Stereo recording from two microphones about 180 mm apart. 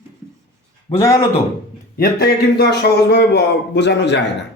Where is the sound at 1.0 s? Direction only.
15° left (ahead or behind).